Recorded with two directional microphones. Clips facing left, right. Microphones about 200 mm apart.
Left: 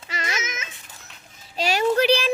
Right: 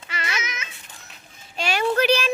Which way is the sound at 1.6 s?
40° left (ahead or behind).